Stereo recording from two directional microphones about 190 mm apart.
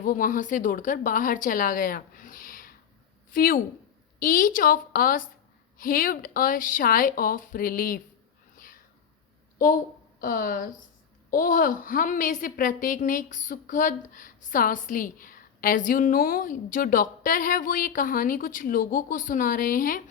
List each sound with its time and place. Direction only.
0.0 s a woman's voice: 45° left (ahead or behind)
9.6 s a woman's voice: 45° left (ahead or behind)